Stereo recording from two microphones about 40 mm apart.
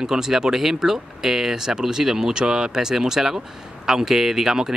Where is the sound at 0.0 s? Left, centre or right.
Centre.